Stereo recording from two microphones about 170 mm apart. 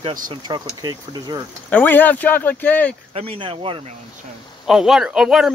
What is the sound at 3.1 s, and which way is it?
Speech, 35° right (ahead or behind).